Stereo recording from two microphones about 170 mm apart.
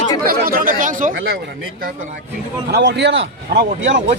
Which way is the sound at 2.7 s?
85° right.